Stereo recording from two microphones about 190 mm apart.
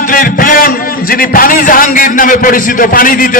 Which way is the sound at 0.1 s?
45° left (ahead or behind).